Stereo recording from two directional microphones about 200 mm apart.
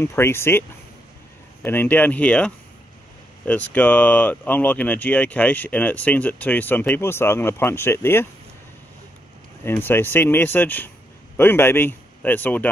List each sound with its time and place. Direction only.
0.0 s speech: 10° left (ahead or behind)
9.7 s speech: 10° left (ahead or behind)